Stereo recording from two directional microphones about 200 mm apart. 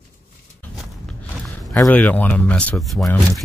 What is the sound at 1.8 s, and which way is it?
Speech, 5° left (ahead or behind).